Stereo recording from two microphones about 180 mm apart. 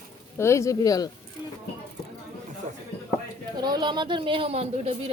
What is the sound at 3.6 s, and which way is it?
A woman's voice, 25° right (ahead or behind).